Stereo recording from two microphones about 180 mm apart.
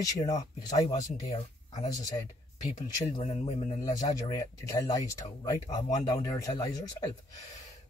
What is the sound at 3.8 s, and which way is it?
A man's voice, 20° left (ahead or behind).